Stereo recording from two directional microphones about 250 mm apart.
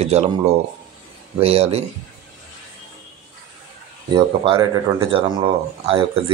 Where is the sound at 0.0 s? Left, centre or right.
Right.